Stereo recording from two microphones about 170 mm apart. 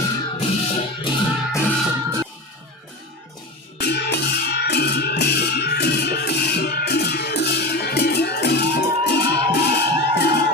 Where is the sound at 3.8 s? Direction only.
75° left (ahead or behind).